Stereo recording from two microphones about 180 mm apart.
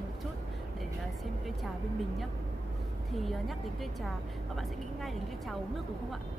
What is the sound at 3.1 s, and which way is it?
Speech, centre (ahead or behind).